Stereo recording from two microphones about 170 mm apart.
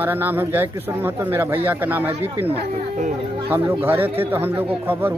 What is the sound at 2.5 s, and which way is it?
Speech, 45° right (ahead or behind).